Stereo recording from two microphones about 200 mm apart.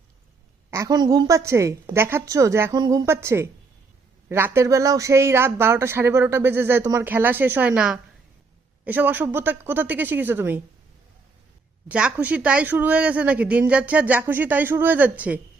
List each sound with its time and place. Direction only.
0.7 s speech: 15° right (ahead or behind)
11.9 s speech: 5° right (ahead or behind)